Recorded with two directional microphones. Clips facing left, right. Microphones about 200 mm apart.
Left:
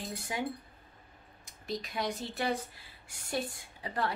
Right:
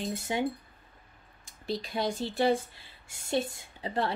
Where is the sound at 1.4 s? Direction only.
30° right (ahead or behind).